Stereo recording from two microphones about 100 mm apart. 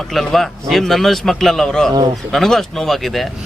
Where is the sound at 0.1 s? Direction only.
Centre (ahead or behind).